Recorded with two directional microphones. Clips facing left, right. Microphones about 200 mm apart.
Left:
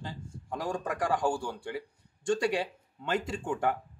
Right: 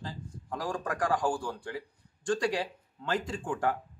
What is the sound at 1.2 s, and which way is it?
Speech, 25° left (ahead or behind).